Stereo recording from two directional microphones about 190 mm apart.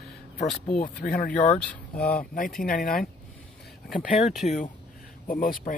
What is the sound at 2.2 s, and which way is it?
A man's voice, 45° left (ahead or behind).